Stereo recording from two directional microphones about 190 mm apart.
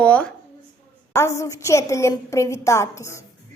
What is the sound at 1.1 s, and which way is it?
A woman's voice, 15° left (ahead or behind).